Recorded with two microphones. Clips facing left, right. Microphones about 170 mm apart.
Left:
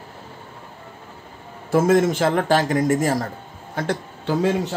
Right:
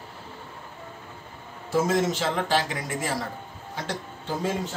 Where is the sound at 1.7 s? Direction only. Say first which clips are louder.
Left 7 dB; 55° left (ahead or behind).